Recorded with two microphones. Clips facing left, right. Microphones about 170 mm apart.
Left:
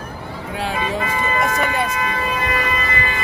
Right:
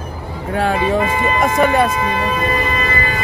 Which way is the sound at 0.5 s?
50° right (ahead or behind).